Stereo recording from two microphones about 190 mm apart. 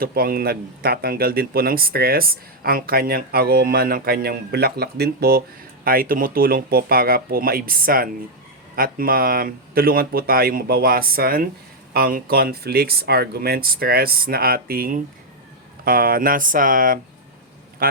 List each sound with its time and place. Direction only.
0.0 s speech: 50° right (ahead or behind)